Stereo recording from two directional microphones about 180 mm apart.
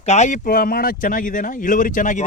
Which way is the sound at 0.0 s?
40° left (ahead or behind).